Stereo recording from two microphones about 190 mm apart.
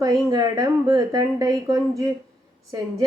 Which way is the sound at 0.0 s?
20° right (ahead or behind).